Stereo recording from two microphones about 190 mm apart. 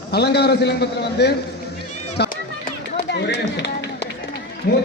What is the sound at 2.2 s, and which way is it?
Run, 60° left (ahead or behind).